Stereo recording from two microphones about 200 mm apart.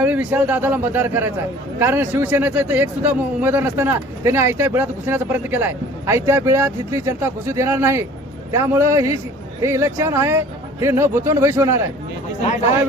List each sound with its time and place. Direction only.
0.0 s a man's voice: 5° right (ahead or behind)